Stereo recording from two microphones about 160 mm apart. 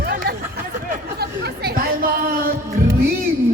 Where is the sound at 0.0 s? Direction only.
75° right (ahead or behind).